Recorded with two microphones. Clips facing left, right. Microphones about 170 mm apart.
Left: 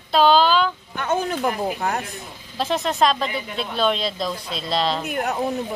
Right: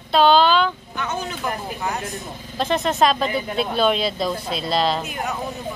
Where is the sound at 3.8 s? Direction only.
5° right (ahead or behind).